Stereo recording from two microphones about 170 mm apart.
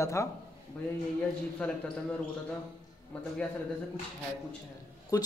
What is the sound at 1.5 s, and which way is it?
Speech, 5° left (ahead or behind).